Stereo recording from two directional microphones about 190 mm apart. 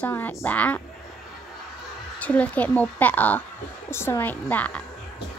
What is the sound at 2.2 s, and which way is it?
A woman's voice, 5° left (ahead or behind).